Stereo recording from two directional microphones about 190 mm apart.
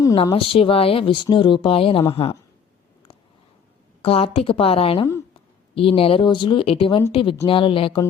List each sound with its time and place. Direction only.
0.0 s speech: 20° left (ahead or behind)
4.0 s speech: 30° left (ahead or behind)